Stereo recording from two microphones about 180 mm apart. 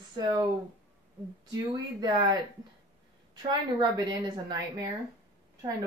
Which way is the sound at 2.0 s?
20° right (ahead or behind).